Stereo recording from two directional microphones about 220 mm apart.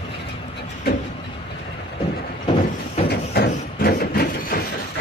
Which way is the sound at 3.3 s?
45° left (ahead or behind).